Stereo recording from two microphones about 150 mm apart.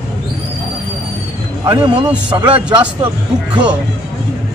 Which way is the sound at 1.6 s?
25° right (ahead or behind).